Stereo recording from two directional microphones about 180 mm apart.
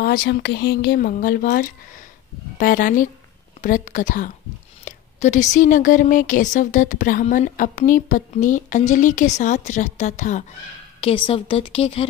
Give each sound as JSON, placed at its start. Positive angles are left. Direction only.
{"t": 0.0, "sound": "speech", "side_deg": 60}
{"t": 11.0, "sound": "a woman's voice", "side_deg": 30}